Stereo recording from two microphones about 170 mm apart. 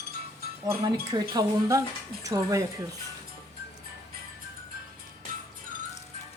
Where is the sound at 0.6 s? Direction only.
25° right (ahead or behind).